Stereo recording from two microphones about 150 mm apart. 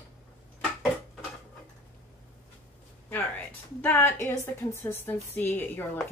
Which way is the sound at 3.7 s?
15° left (ahead or behind).